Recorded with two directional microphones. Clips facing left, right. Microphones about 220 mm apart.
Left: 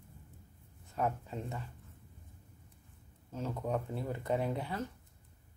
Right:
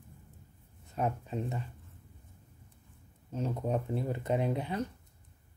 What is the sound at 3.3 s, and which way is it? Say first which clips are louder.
Speech: right 3 dB; 20° right (ahead or behind).